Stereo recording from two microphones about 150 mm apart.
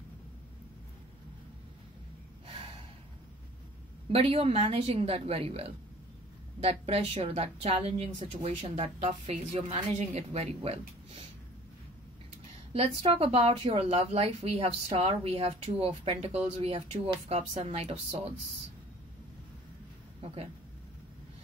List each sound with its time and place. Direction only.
4.1 s a woman's voice: 40° right (ahead or behind)
12.7 s a woman's voice: 40° right (ahead or behind)